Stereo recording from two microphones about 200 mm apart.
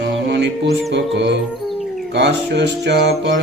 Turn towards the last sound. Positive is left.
turn(degrees=-60)  # may be behind; listen again after turning